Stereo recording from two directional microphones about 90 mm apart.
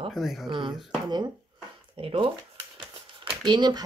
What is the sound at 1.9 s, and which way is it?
Speech, 90° right.